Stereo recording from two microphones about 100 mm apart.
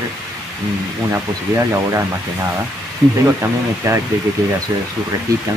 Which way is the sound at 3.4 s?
30° right (ahead or behind).